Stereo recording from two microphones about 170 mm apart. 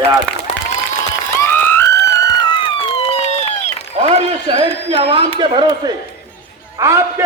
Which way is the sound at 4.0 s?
35° right (ahead or behind).